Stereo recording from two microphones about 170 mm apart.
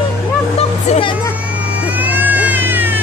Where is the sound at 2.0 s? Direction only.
10° right (ahead or behind).